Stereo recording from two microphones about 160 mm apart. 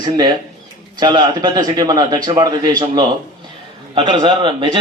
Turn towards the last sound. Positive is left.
turn(degrees=-30)  # may be behind; listen again after turning